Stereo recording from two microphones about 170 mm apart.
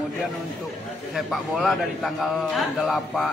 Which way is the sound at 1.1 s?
Centre (ahead or behind).